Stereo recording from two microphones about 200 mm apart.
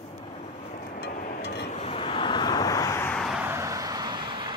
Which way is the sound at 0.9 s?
50° left (ahead or behind).